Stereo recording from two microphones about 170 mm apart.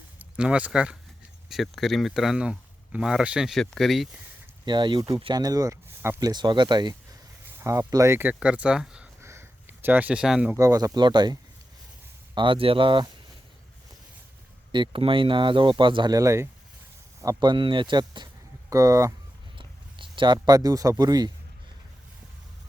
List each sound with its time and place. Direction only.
0.3 s speech: 5° right (ahead or behind)
4.6 s speech: 25° right (ahead or behind); by 9.0 s 5° right (ahead or behind)
9.2 s a sound: 15° right (ahead or behind)
10.6 s speech: 20° right (ahead or behind)
14.7 s speech: 30° right (ahead or behind)